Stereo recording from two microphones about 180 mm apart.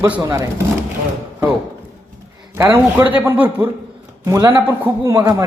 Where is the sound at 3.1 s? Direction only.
10° right (ahead or behind).